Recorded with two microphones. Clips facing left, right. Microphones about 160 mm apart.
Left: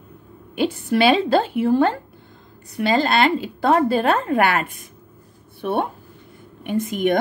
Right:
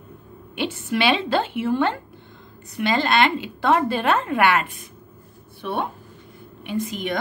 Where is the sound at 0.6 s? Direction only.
40° left (ahead or behind).